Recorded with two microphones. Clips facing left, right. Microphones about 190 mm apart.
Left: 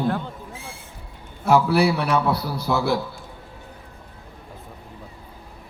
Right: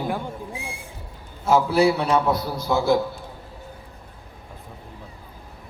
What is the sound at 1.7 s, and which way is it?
Speech, 65° left (ahead or behind).